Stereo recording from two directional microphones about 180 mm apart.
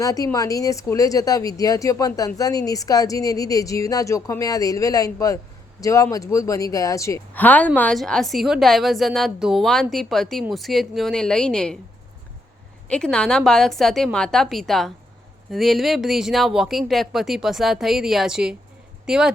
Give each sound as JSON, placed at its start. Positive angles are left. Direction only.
{"t": 0.0, "sound": "a woman's voice", "side_deg": 20}
{"t": 12.9, "sound": "speech", "side_deg": 5}